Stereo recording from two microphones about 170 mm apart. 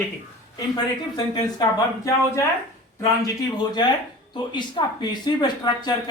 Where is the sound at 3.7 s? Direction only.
25° left (ahead or behind).